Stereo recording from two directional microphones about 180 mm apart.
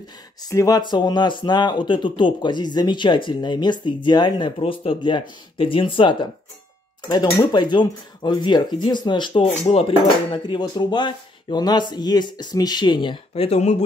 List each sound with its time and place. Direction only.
0.5 s speech: 20° left (ahead or behind); by 13.8 s 35° left (ahead or behind)